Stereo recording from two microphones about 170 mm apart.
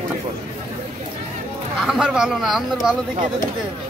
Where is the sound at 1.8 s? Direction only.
5° right (ahead or behind).